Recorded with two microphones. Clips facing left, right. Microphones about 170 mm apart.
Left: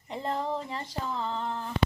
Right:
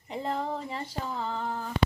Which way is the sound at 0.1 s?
Centre (ahead or behind).